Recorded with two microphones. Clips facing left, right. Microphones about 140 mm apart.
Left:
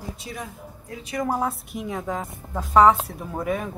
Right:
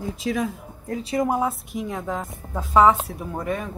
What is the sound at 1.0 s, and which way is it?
Speech, 30° right (ahead or behind).